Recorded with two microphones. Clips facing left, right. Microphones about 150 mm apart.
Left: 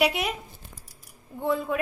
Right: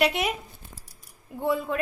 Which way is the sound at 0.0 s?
5° left (ahead or behind).